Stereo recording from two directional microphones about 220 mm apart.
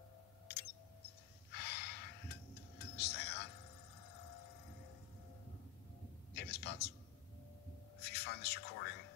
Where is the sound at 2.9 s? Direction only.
50° left (ahead or behind).